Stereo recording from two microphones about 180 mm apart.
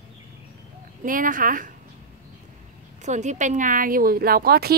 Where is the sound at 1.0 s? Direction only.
50° right (ahead or behind).